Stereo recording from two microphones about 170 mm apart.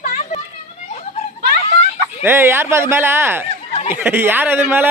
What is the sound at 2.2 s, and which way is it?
Speech, 15° right (ahead or behind).